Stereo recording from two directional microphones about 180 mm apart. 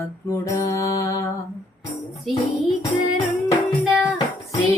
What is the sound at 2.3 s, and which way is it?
Music, centre (ahead or behind).